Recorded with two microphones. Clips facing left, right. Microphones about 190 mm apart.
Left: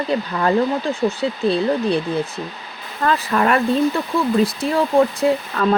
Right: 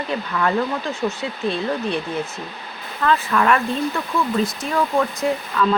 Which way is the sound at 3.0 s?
35° left (ahead or behind).